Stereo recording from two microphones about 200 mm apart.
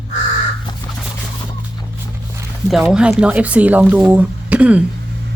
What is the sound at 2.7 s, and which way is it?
Speech, centre (ahead or behind).